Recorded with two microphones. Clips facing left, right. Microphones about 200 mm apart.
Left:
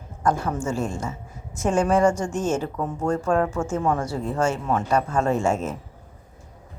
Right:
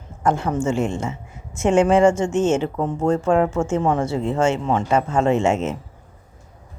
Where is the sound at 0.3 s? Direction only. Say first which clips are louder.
Right 4 dB; 25° right (ahead or behind).